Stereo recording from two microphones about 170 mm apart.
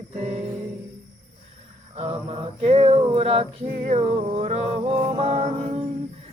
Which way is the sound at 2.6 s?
35° right (ahead or behind).